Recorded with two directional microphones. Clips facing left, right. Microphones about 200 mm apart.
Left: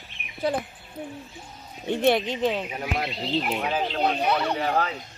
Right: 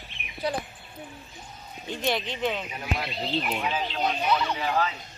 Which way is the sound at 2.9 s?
50° left (ahead or behind).